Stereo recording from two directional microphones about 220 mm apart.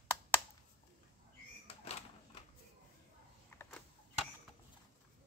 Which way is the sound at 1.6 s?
30° left (ahead or behind).